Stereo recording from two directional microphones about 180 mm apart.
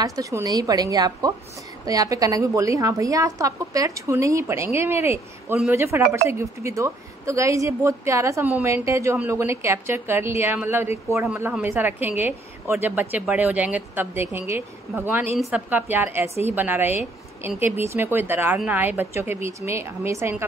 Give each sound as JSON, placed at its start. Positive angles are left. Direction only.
{"t": 0.0, "sound": "a woman's voice", "side_deg": -20}